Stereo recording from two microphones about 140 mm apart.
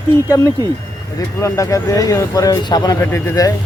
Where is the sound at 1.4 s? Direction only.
25° left (ahead or behind).